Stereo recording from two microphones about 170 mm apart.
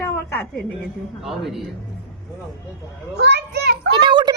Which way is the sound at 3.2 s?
80° right.